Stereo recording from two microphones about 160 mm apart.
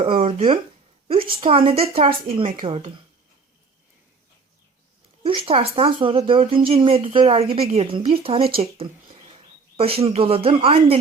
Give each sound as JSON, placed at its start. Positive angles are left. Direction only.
{"t": 0.0, "sound": "speech", "side_deg": -40}
{"t": 5.2, "sound": "speech", "side_deg": -35}